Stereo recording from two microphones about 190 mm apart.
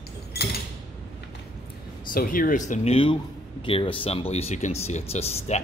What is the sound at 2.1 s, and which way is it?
A man's voice, 50° left (ahead or behind).